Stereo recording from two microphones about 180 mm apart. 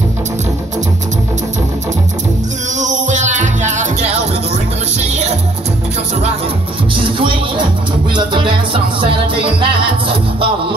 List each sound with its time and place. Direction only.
2.7 s music: 40° right (ahead or behind)
7.2 s music: 30° right (ahead or behind)